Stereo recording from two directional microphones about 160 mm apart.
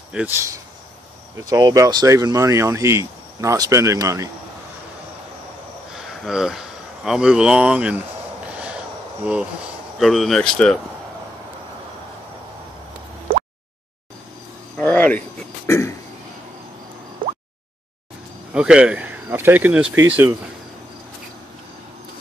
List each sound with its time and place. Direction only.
0.1 s speech: 5° right (ahead or behind)
1.5 s speech: 20° right (ahead or behind)
5.9 s a sound: 5° right (ahead or behind)
7.1 s speech: 5° right (ahead or behind)
9.2 s speech: 5° right (ahead or behind)
14.8 s throat clearing: 10° left (ahead or behind)
18.5 s speech: 5° right (ahead or behind)